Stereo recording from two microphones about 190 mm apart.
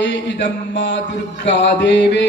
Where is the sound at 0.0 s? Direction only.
65° left (ahead or behind).